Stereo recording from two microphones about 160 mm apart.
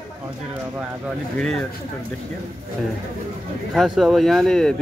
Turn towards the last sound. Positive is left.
turn(degrees=5)  # may be behind; listen again after turning